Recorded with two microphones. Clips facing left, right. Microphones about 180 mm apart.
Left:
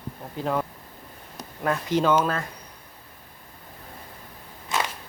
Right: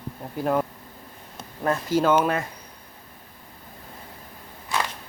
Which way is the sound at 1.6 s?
5° right (ahead or behind).